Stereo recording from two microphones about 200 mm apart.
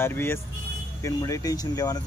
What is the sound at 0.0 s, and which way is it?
Speech, 10° left (ahead or behind).